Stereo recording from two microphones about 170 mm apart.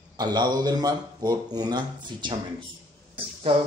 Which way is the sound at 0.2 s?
25° right (ahead or behind).